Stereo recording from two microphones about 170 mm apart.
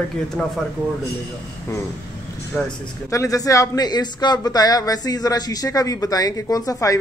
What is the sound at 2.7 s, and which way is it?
Speech, 20° left (ahead or behind).